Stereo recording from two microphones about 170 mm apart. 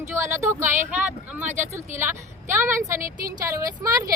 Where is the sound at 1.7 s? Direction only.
15° right (ahead or behind).